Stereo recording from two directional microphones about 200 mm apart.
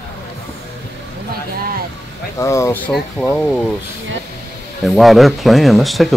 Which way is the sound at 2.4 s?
15° left (ahead or behind).